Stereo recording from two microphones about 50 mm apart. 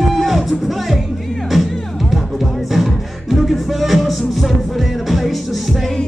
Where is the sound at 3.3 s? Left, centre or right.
Centre.